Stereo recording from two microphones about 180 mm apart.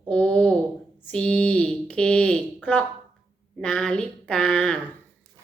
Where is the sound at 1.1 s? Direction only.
5° left (ahead or behind).